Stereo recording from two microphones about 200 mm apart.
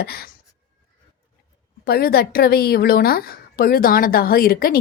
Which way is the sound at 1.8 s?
50° left (ahead or behind).